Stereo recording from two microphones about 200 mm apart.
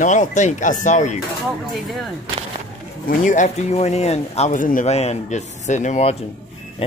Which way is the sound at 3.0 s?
40° left (ahead or behind).